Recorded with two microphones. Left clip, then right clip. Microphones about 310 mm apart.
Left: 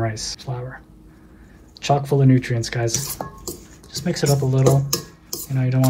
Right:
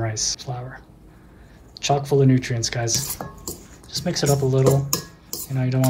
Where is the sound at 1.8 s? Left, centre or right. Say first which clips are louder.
Even; centre.